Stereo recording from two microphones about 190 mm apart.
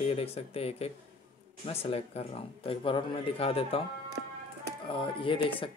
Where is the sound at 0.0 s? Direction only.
30° left (ahead or behind).